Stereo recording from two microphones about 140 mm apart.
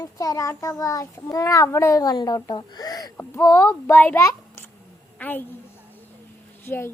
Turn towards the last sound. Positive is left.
turn(degrees=15)  # may be behind; listen again after turning